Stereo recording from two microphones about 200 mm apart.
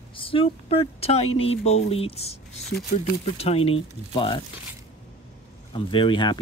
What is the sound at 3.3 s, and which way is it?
Speech, 30° left (ahead or behind).